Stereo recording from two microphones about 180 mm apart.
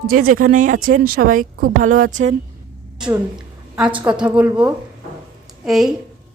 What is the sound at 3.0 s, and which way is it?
A woman's voice, 5° right (ahead or behind).